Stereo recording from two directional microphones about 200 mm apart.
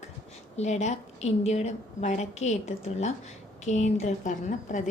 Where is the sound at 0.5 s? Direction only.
35° left (ahead or behind).